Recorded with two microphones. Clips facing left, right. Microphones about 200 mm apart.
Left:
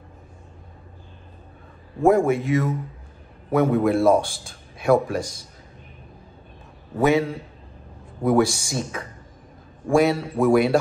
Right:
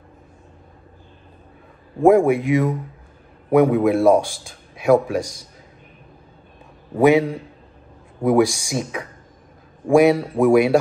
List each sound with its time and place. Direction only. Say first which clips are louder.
2.0 s a man's voice: right 4 dB; 15° right (ahead or behind)
7.0 s speech: right 5 dB; 15° right (ahead or behind)